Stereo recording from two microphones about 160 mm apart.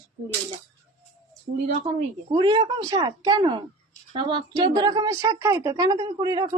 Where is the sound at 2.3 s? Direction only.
30° right (ahead or behind).